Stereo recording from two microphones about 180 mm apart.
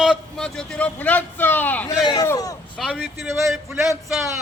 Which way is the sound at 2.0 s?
20° left (ahead or behind).